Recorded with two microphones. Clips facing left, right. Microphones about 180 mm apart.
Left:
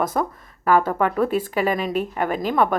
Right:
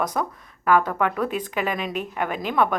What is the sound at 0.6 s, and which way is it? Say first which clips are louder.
A woman's voice: left 2 dB; 45° left (ahead or behind).